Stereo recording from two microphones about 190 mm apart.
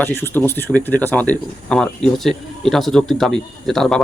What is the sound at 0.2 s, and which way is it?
Speech, 10° left (ahead or behind).